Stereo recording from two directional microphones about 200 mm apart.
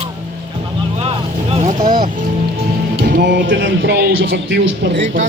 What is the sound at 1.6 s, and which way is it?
Speech, 45° right (ahead or behind).